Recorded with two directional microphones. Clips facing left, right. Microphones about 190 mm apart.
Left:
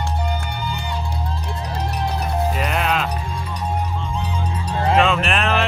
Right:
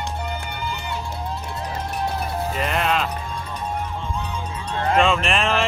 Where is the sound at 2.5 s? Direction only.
Centre (ahead or behind).